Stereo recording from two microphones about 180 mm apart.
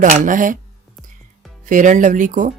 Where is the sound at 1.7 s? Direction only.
45° right (ahead or behind).